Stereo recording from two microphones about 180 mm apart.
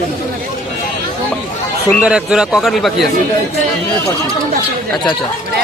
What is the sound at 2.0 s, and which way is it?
A man's voice, 5° right (ahead or behind).